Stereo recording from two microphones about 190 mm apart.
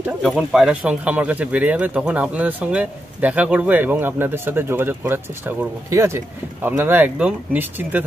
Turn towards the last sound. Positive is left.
turn(degrees=-10)  # may be behind; listen again after turning